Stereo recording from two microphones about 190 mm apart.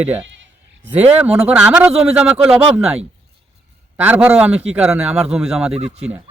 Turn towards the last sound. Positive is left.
turn(degrees=-5)  # may be behind; listen again after turning